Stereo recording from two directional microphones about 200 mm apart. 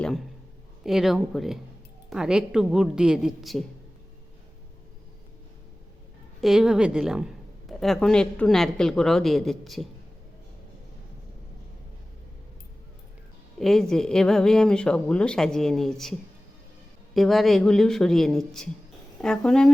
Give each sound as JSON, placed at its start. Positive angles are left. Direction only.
{"t": 0.0, "sound": "a man's voice", "side_deg": 0}
{"t": 6.4, "sound": "a woman's voice", "side_deg": 0}
{"t": 13.6, "sound": "a woman's voice", "side_deg": 0}
{"t": 17.2, "sound": "a woman's voice", "side_deg": 0}